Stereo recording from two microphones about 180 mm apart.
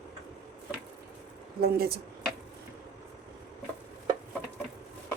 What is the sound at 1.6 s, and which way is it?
Speech, 55° right (ahead or behind).